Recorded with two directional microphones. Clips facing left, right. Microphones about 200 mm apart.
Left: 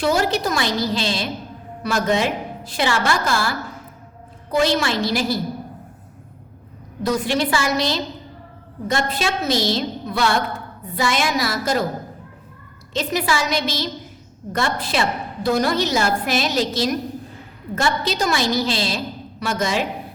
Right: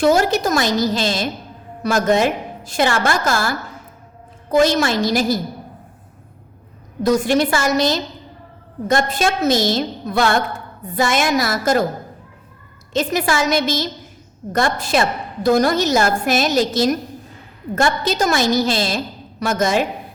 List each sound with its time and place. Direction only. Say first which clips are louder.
0.0 s a woman's voice: right 4 dB; 45° right (ahead or behind)
4.5 s a woman's voice: right 4 dB; 45° right (ahead or behind)
7.0 s a woman's voice: right 5 dB; 45° right (ahead or behind)
12.9 s a woman's voice: right 3 dB; 50° right (ahead or behind)